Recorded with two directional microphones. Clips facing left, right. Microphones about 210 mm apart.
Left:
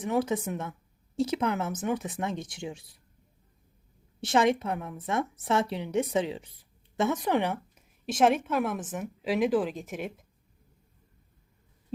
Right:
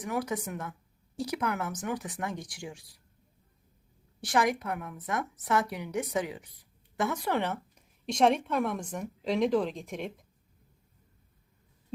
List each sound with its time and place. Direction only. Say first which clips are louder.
0.0 s a woman's voice: left 5 dB; 25° left (ahead or behind)
4.2 s a woman's voice: left 4 dB; 25° left (ahead or behind); by 10.1 s 5° left (ahead or behind)